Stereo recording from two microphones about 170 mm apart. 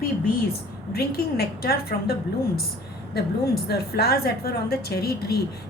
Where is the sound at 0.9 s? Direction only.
65° left (ahead or behind).